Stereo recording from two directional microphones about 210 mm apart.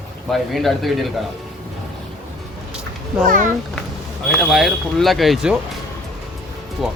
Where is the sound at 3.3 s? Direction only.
40° right (ahead or behind).